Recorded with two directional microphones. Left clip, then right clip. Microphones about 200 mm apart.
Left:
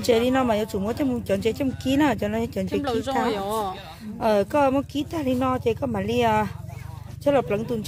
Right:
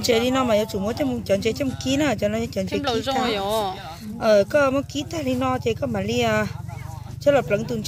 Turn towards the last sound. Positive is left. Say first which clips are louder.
# right 2 dB
turn(degrees=55)  # may be behind; listen again after turning